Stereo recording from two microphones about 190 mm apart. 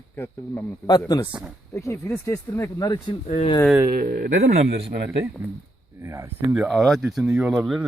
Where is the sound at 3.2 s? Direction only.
35° left (ahead or behind).